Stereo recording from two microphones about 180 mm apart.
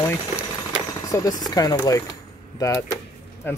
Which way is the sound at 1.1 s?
20° left (ahead or behind).